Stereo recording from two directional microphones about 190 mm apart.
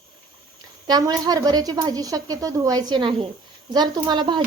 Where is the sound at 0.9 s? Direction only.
20° right (ahead or behind).